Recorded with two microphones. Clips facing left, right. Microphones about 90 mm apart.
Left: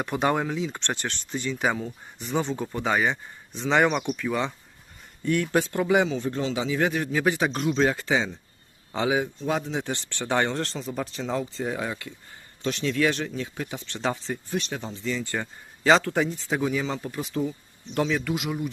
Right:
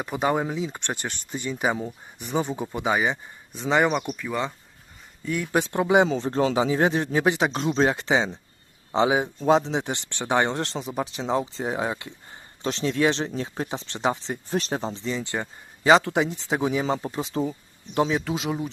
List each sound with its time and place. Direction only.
0.0 s speech: 5° right (ahead or behind)
5.5 s speech: 20° right (ahead or behind)
6.1 s speech: 35° right (ahead or behind)
14.5 s speech: 35° right (ahead or behind)